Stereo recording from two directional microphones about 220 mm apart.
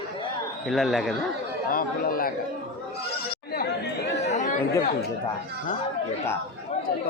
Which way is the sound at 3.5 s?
45° left (ahead or behind).